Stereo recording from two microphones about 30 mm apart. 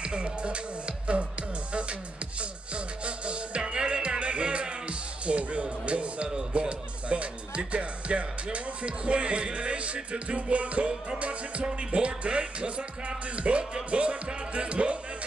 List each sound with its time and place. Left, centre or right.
0.0 s music: right